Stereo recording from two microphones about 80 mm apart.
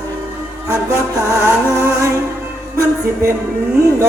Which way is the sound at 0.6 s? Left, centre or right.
Right.